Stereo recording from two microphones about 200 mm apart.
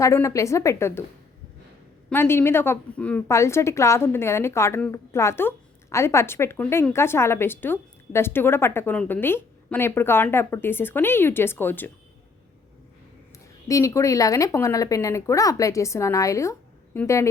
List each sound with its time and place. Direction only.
0.0 s a woman's voice: 15° left (ahead or behind)
2.0 s a woman's voice: 10° left (ahead or behind)
13.7 s a woman's voice: 15° left (ahead or behind)